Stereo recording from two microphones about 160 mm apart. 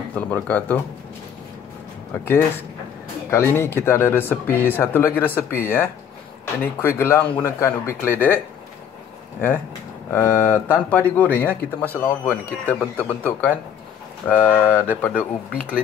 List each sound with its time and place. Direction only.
0.1 s speech: 10° left (ahead or behind)
3.3 s speech: 15° left (ahead or behind)
10.1 s speech: 15° left (ahead or behind)